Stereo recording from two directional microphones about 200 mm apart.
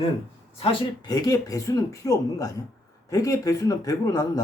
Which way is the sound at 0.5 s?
25° left (ahead or behind).